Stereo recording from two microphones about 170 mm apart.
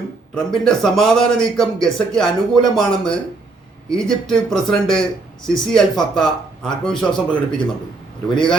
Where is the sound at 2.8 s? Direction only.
5° left (ahead or behind).